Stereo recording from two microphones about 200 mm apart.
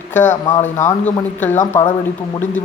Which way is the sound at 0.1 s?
40° left (ahead or behind).